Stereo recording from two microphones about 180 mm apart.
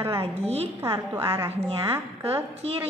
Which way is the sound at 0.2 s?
35° right (ahead or behind).